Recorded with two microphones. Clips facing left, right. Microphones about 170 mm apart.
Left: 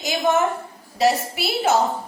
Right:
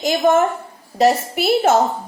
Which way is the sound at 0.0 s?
45° right (ahead or behind).